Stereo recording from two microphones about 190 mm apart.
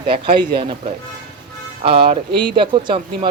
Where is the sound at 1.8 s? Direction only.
30° right (ahead or behind).